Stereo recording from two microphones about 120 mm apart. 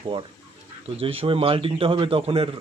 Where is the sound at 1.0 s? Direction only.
50° right (ahead or behind).